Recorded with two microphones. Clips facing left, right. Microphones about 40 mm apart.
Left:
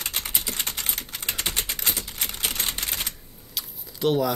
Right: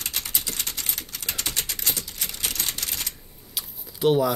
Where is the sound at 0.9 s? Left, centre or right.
Left.